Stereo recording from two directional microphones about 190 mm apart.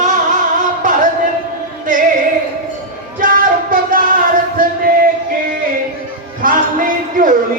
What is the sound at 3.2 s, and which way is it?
Music, 45° right (ahead or behind).